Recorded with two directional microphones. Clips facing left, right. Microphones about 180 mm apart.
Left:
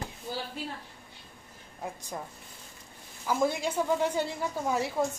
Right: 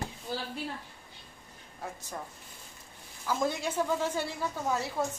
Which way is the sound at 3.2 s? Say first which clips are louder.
Left 3 dB; 15° left (ahead or behind).